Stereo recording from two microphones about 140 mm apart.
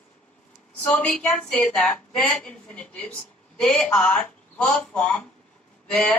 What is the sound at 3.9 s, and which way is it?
A woman's voice, 15° left (ahead or behind).